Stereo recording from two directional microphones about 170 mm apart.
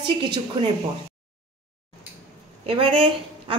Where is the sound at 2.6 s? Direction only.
30° right (ahead or behind).